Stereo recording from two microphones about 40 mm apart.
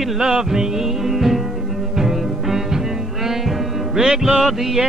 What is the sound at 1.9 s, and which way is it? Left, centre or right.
Music, centre.